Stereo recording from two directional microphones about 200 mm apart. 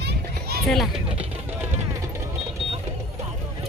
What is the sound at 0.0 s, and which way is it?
Children playing, 50° right (ahead or behind).